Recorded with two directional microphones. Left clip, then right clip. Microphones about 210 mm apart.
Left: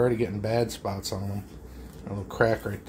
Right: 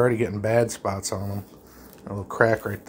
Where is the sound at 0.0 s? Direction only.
20° right (ahead or behind).